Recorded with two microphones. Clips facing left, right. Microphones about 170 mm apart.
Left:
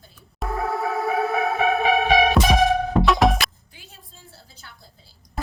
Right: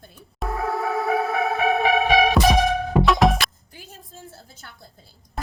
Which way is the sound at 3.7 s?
40° right (ahead or behind).